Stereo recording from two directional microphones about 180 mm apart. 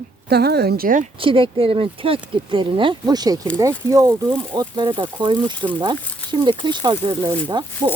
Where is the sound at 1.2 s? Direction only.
30° right (ahead or behind).